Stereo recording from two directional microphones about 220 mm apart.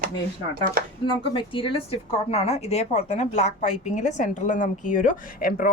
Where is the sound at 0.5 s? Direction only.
40° right (ahead or behind).